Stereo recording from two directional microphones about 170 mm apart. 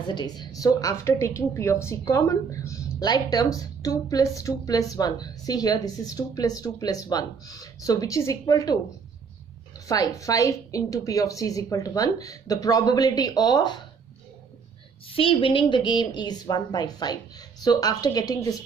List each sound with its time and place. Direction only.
0.1 s a woman's voice: 25° left (ahead or behind)
9.8 s a woman's voice: 20° left (ahead or behind)
15.1 s a woman's voice: 30° left (ahead or behind)